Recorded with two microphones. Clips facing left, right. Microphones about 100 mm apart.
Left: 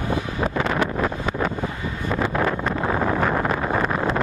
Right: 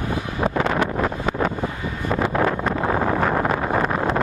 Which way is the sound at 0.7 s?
35° right (ahead or behind).